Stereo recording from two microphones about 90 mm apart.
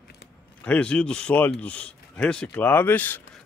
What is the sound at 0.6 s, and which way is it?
A man's voice, 15° left (ahead or behind).